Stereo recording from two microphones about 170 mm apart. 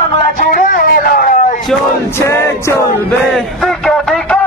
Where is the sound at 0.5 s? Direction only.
55° left (ahead or behind).